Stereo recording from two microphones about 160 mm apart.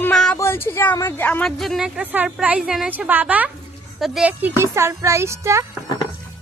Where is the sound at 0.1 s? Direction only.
Centre (ahead or behind).